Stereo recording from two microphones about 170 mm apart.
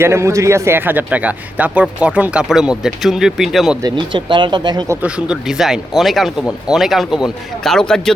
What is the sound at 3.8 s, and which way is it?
Speech, 30° right (ahead or behind).